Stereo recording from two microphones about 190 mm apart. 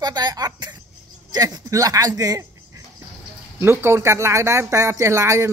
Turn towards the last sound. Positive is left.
turn(degrees=-15)  # may be behind; listen again after turning